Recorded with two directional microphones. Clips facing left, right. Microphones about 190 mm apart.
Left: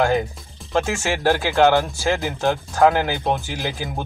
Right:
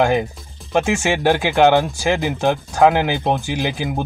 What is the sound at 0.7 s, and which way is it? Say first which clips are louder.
Speech: right 4 dB; 15° right (ahead or behind).